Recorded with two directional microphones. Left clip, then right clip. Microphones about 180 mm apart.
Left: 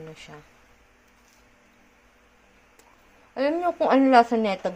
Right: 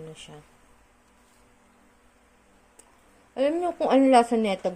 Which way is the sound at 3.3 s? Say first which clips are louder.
Left 1 dB; 20° right (ahead or behind).